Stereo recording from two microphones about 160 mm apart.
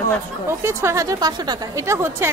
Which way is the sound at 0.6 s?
20° right (ahead or behind).